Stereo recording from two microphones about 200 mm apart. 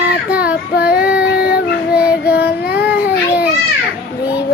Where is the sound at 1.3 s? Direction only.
50° left (ahead or behind).